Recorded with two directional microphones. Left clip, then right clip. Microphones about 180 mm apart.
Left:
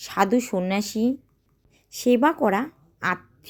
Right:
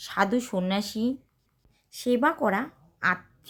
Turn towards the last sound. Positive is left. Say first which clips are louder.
# even
turn(degrees=25)  # may be behind; listen again after turning